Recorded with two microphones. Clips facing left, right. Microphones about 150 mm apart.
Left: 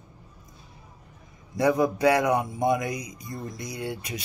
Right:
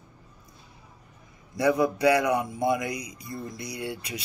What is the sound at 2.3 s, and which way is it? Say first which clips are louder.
Speech: left 1 dB; 20° left (ahead or behind).